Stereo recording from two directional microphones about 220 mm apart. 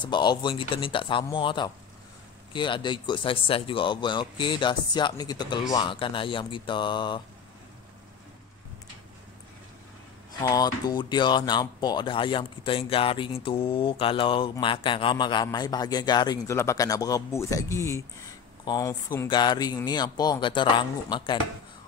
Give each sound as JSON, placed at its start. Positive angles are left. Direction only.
{"t": 0.0, "sound": "speech", "side_deg": 20}
{"t": 10.4, "sound": "speech", "side_deg": 15}